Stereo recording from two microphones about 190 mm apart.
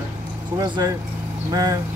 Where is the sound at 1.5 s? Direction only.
20° right (ahead or behind).